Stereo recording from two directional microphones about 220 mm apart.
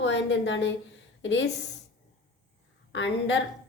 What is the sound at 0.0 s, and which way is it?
A woman's voice, 55° left (ahead or behind).